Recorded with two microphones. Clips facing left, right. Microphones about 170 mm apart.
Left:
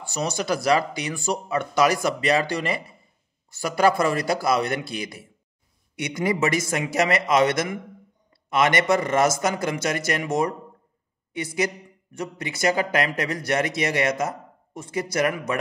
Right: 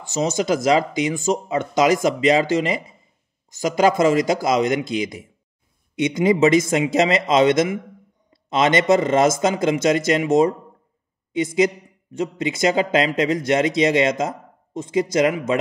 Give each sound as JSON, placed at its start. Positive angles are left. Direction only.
{"t": 0.1, "sound": "a man's voice", "side_deg": -20}